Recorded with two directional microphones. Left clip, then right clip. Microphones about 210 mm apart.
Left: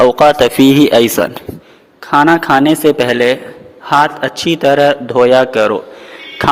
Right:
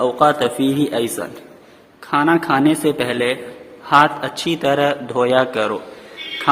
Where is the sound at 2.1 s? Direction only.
35° left (ahead or behind).